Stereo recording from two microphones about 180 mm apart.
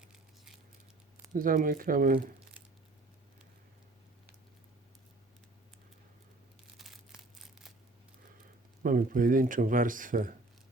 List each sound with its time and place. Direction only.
0.0 s a sound: 5° right (ahead or behind)
1.3 s speech: 50° right (ahead or behind)
6.7 s crumpling: centre (ahead or behind)
8.8 s speech: 50° right (ahead or behind)